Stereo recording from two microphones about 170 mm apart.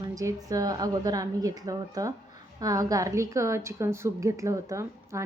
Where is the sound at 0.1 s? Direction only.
20° right (ahead or behind).